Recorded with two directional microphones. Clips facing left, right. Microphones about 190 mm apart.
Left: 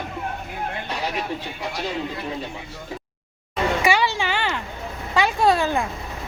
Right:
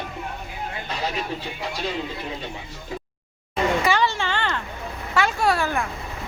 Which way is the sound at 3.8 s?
10° left (ahead or behind).